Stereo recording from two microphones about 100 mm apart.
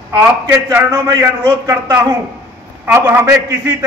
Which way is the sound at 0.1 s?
35° right (ahead or behind).